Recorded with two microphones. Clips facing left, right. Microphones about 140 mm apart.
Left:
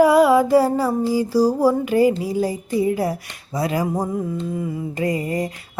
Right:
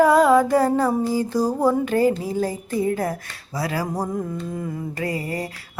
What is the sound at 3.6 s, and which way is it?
Finger snapping, 20° left (ahead or behind).